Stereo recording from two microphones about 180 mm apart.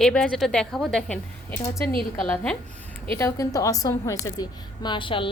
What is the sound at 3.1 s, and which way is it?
A woman's voice, 15° left (ahead or behind).